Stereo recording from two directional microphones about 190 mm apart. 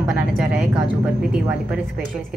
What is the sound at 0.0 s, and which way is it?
A woman's voice, 5° right (ahead or behind).